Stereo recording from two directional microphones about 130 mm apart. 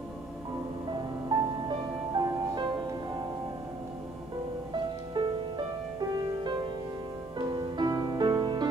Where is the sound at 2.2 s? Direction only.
35° right (ahead or behind).